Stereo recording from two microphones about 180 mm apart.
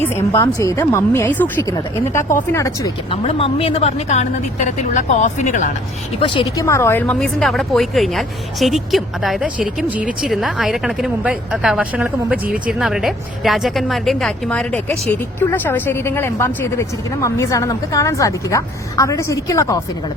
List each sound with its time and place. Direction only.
0.3 s speech: 15° left (ahead or behind)
3.1 s a woman's voice: 30° left (ahead or behind)
6.1 s a woman's voice: 25° left (ahead or behind)